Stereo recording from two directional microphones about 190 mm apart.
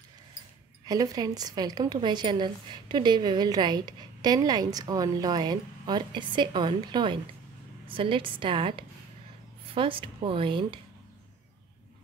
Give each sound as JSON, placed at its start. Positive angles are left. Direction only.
{"t": 0.8, "sound": "a woman's voice", "side_deg": -20}